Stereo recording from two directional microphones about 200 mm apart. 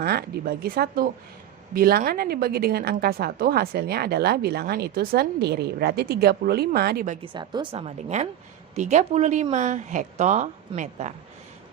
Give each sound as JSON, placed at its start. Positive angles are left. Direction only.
{"t": 0.0, "sound": "a woman's voice", "side_deg": -50}
{"t": 7.2, "sound": "a woman's voice", "side_deg": -25}